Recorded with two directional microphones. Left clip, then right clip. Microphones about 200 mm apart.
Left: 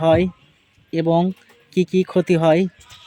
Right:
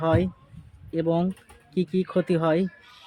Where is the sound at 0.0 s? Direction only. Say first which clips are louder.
Left 8 dB; 40° left (ahead or behind).